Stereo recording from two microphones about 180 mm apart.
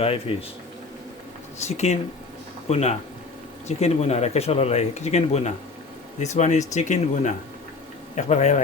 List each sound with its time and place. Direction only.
0.0 s speech: 30° left (ahead or behind)
1.5 s speech: 40° left (ahead or behind)